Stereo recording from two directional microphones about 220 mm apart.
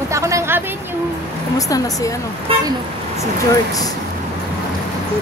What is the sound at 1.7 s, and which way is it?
Speech, 15° left (ahead or behind).